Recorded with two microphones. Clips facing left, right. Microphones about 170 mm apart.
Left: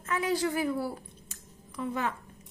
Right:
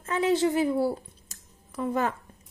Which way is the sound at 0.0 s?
25° right (ahead or behind).